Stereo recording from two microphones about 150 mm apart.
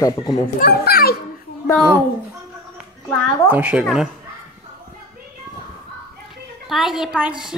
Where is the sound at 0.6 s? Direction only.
90° left.